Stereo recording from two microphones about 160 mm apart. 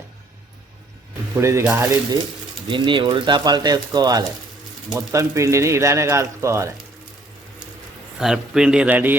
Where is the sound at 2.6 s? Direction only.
30° right (ahead or behind).